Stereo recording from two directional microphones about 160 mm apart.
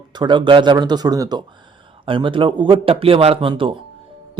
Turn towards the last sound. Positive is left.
turn(degrees=-35)  # may be behind; listen again after turning